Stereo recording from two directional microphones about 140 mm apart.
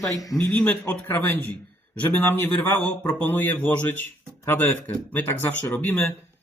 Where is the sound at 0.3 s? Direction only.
10° left (ahead or behind).